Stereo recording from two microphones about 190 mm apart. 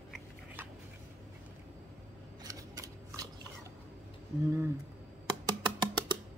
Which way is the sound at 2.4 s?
20° right (ahead or behind).